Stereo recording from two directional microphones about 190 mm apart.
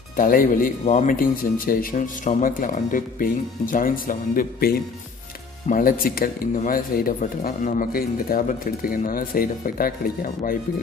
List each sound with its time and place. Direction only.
0.1 s speech: 45° left (ahead or behind)